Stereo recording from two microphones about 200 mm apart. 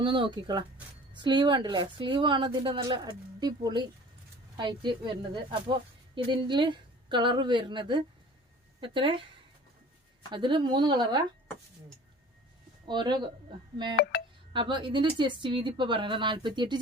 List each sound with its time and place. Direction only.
0.0 s a woman's voice: 25° right (ahead or behind)
10.3 s a woman's voice: 25° right (ahead or behind)
12.8 s speech: 25° right (ahead or behind)
14.1 s music: 55° left (ahead or behind)
14.5 s a woman's voice: 25° right (ahead or behind)